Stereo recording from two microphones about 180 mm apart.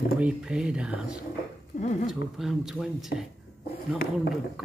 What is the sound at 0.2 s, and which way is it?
Speech, 5° right (ahead or behind).